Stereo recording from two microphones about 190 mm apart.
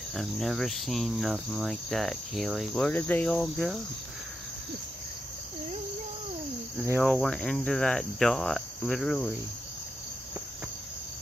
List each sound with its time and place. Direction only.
0.1 s cricket: centre (ahead or behind)
7.0 s cricket: 5° left (ahead or behind)